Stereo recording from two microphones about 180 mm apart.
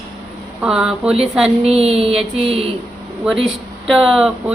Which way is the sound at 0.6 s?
5° right (ahead or behind).